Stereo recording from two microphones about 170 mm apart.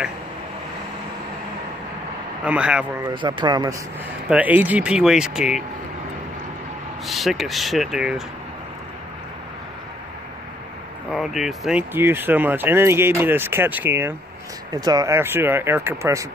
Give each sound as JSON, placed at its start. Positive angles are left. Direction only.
{"t": 2.4, "sound": "speech", "side_deg": -5}
{"t": 3.1, "sound": "speech", "side_deg": -25}
{"t": 4.3, "sound": "speech", "side_deg": -10}
{"t": 7.1, "sound": "speech", "side_deg": 0}
{"t": 11.1, "sound": "speech", "side_deg": 0}
{"t": 11.9, "sound": "speech", "side_deg": -15}